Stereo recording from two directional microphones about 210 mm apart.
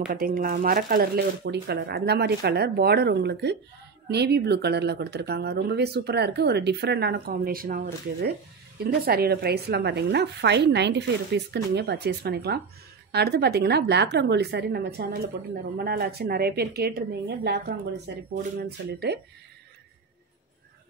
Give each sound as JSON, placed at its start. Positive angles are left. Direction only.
{"t": 0.1, "sound": "speech", "side_deg": -40}